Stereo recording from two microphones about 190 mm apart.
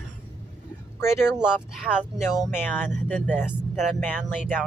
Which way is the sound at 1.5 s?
5° right (ahead or behind).